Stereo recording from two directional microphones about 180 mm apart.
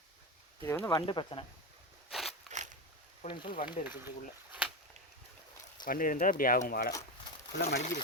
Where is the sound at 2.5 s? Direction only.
40° right (ahead or behind).